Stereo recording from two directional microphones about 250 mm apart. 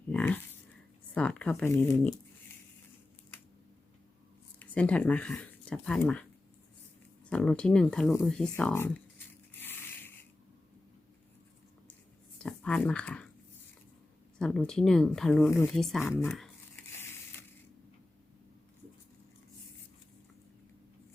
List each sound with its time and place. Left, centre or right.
0.1 s a sound: centre
1.1 s speech: centre
4.6 s speech: centre
7.3 s speech: centre
12.4 s speech: centre
14.3 s speech: centre